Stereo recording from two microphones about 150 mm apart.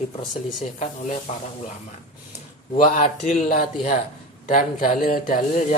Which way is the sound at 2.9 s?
55° left (ahead or behind).